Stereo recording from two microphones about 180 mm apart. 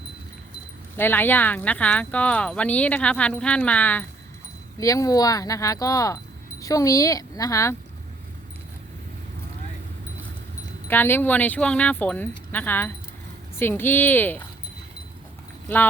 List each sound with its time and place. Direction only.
0.9 s speech: 10° left (ahead or behind)
10.8 s speech: 10° left (ahead or behind)